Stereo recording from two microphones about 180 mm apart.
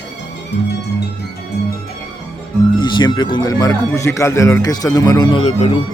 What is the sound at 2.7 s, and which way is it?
Speech, 25° left (ahead or behind).